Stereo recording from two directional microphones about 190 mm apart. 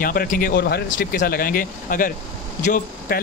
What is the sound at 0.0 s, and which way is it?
Speech, 50° left (ahead or behind).